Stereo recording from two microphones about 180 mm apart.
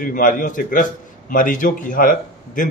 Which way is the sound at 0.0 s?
50° left (ahead or behind).